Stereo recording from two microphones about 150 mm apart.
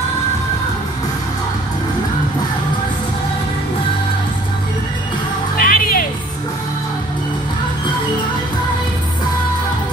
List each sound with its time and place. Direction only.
5.6 s music: 75° left (ahead or behind)